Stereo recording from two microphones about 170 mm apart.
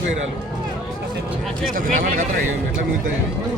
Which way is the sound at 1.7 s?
55° right (ahead or behind).